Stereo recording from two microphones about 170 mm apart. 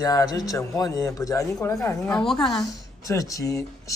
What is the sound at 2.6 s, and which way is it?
A man's voice, 20° left (ahead or behind).